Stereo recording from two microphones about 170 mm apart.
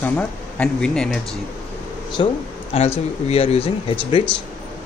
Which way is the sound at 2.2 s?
25° left (ahead or behind).